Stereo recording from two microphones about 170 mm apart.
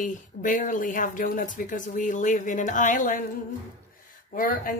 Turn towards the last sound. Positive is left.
turn(degrees=55)  # may be behind; listen again after turning